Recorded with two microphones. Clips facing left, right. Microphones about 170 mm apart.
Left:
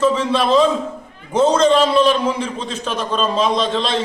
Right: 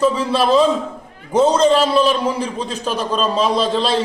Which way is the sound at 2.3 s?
35° right (ahead or behind).